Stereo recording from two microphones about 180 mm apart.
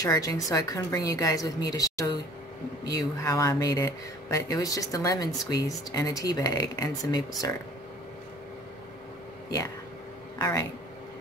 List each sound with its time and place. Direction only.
0.0 s speech: 20° left (ahead or behind)
10.4 s speech: 20° left (ahead or behind)